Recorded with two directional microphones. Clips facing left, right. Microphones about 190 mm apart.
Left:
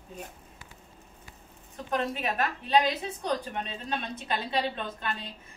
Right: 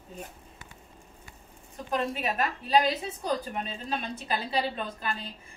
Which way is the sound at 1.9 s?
Centre (ahead or behind).